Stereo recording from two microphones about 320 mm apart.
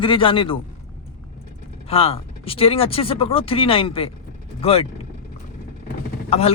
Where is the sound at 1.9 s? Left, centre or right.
Centre.